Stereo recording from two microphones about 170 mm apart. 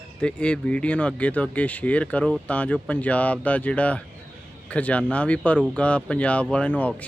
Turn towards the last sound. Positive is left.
turn(degrees=10)  # may be behind; listen again after turning